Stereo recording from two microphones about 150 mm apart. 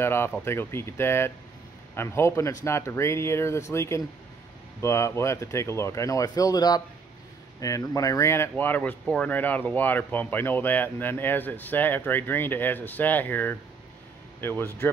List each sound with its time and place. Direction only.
0.0 s speech: 15° left (ahead or behind)